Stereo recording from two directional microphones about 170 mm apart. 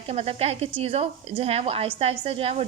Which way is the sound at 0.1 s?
35° right (ahead or behind).